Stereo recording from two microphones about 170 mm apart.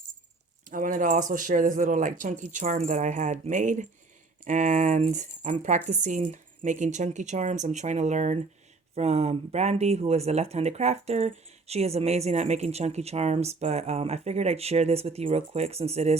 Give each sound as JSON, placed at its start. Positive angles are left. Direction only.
{"t": 0.7, "sound": "speech", "side_deg": -55}